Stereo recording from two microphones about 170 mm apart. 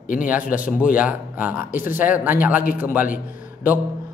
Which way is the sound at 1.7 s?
55° left (ahead or behind).